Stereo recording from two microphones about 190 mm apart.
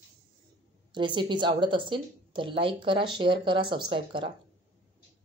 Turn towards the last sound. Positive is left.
turn(degrees=-25)  # may be behind; listen again after turning